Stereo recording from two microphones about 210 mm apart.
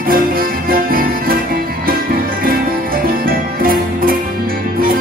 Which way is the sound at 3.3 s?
45° right (ahead or behind).